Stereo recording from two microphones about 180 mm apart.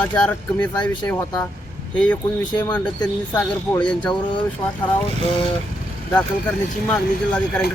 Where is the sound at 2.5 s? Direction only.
20° left (ahead or behind).